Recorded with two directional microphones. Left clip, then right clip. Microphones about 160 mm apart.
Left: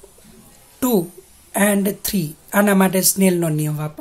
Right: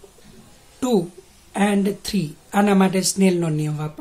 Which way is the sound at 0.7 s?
45° left (ahead or behind).